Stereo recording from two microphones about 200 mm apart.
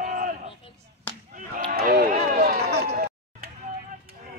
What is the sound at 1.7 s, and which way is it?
Run, 45° right (ahead or behind).